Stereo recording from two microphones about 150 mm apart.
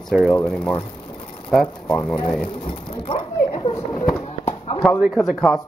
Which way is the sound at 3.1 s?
40° left (ahead or behind).